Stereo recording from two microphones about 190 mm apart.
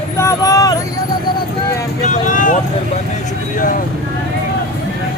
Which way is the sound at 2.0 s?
40° left (ahead or behind).